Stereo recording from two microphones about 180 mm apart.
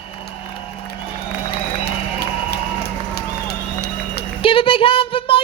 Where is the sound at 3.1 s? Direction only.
65° left (ahead or behind).